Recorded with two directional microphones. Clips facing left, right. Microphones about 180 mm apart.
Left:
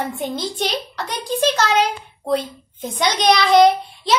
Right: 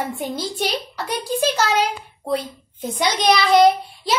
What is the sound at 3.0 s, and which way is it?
A woman's voice, 5° right (ahead or behind).